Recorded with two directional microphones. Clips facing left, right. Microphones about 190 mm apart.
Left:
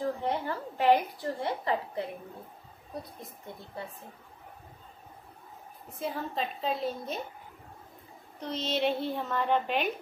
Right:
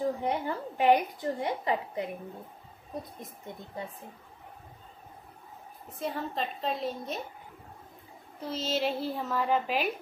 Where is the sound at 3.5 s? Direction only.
20° right (ahead or behind).